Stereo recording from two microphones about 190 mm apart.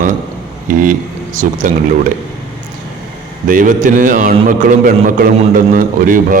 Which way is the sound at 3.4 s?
45° right (ahead or behind).